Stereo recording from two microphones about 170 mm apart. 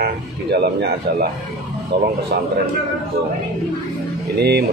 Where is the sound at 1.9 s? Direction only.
80° right.